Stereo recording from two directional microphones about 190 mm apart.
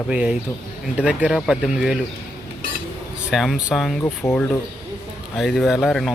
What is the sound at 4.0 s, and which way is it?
Speech, 10° left (ahead or behind).